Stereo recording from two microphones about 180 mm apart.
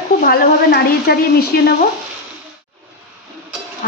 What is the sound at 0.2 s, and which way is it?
A woman's voice, 55° left (ahead or behind).